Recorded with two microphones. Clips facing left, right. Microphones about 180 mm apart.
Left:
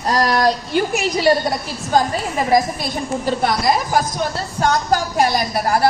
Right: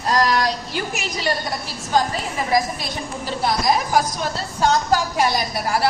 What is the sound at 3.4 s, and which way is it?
Speech, 65° left (ahead or behind).